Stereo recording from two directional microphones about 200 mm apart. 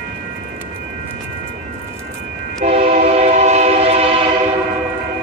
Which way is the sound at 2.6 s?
35° right (ahead or behind).